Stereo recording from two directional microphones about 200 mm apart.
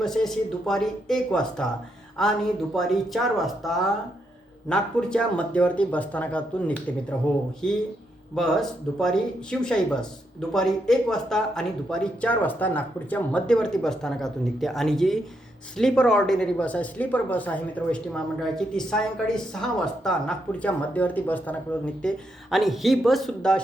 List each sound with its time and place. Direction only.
0.0 s speech: centre (ahead or behind)